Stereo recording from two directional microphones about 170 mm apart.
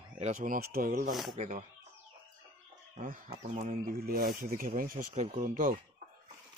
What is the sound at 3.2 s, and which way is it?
Speech, 35° right (ahead or behind).